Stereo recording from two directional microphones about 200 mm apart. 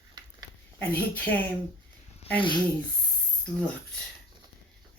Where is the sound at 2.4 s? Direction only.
25° left (ahead or behind).